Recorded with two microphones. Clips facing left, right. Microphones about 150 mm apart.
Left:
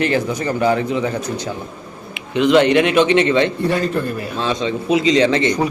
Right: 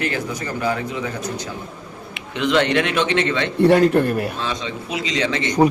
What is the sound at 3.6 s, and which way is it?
Speech, 65° right (ahead or behind).